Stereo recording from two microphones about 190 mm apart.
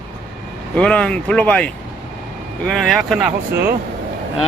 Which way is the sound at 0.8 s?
5° left (ahead or behind).